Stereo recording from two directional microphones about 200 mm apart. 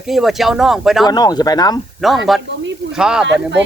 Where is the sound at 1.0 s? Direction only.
20° left (ahead or behind).